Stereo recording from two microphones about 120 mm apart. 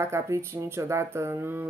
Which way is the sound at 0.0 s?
25° right (ahead or behind).